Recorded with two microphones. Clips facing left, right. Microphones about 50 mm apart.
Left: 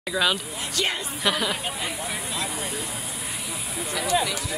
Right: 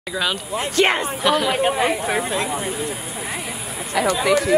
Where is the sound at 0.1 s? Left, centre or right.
Centre.